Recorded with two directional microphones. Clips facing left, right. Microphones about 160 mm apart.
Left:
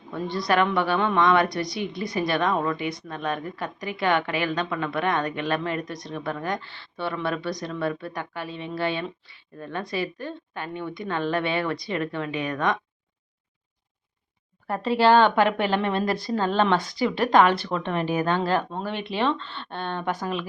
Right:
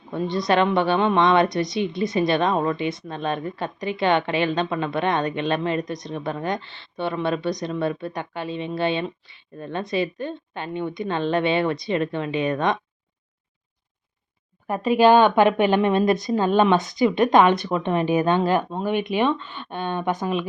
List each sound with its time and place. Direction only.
0.1 s a woman's voice: 20° right (ahead or behind)
14.7 s speech: 15° right (ahead or behind)